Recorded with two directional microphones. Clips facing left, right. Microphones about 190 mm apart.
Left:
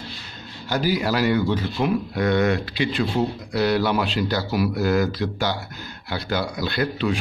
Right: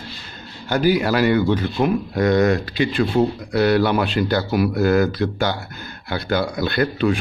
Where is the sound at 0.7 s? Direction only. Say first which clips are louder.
Right 5 dB; 55° right (ahead or behind).